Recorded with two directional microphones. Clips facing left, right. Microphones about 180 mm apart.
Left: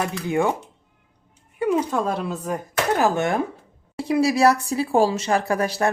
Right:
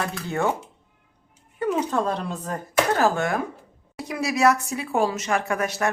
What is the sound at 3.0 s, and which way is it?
Speech, 25° left (ahead or behind).